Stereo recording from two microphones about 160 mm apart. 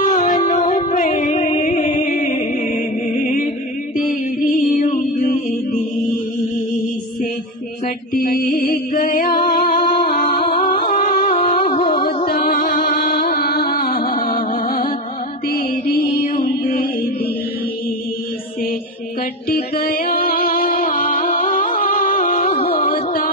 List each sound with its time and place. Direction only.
0.0 s music: 55° left (ahead or behind)
5.1 s music: 50° left (ahead or behind)
8.1 s music: 70° left (ahead or behind)
10.6 s music: 30° left (ahead or behind)
11.0 s music: 45° left (ahead or behind)
12.4 s music: 65° left (ahead or behind); by 13.2 s 85° left
13.3 s music: 65° left (ahead or behind)
19.5 s music: 70° left (ahead or behind)
22.6 s music: 35° left (ahead or behind)